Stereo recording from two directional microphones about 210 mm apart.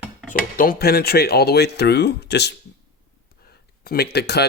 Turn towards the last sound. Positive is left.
turn(degrees=50)  # may be behind; listen again after turning